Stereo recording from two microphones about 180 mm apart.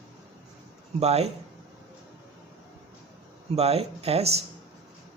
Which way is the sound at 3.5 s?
35° right (ahead or behind).